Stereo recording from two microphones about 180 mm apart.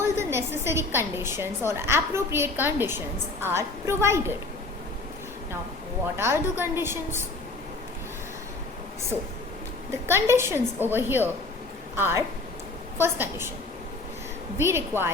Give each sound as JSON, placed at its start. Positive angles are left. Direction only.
{"t": 0.0, "sound": "a woman's voice", "side_deg": -15}
{"t": 6.1, "sound": "a woman's voice", "side_deg": -15}
{"t": 9.9, "sound": "a woman's voice", "side_deg": -15}
{"t": 14.6, "sound": "a woman's voice", "side_deg": -15}